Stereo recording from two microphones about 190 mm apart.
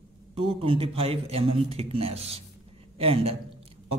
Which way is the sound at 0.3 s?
30° right (ahead or behind).